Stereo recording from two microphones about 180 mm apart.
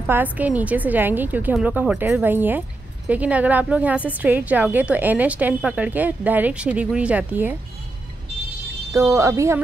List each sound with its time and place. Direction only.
0.0 s a woman's voice: 10° right (ahead or behind)
8.9 s a woman's voice: 15° right (ahead or behind)